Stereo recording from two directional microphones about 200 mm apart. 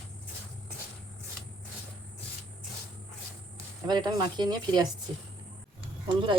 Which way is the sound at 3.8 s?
20° right (ahead or behind).